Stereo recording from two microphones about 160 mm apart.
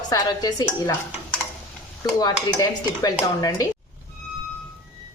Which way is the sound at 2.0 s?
25° left (ahead or behind).